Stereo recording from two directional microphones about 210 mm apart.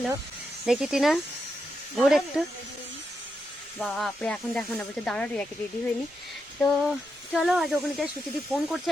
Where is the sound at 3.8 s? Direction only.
5° left (ahead or behind).